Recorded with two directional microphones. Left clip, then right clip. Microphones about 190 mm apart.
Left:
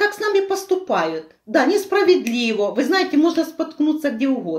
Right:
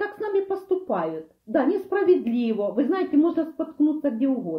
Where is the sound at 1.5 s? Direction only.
30° left (ahead or behind).